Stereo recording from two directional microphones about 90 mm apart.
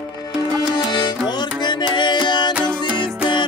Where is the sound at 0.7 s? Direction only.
55° left (ahead or behind).